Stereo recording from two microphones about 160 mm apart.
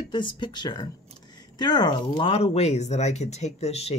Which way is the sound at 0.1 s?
30° left (ahead or behind).